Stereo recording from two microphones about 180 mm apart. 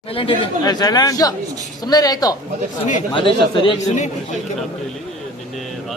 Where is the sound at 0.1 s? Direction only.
30° left (ahead or behind).